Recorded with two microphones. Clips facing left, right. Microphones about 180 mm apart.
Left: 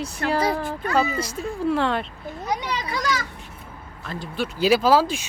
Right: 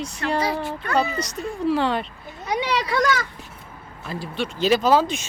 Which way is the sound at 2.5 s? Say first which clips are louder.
Right 8 dB; 75° right (ahead or behind).